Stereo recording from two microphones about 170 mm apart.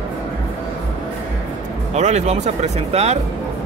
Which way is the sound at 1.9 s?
40° right (ahead or behind).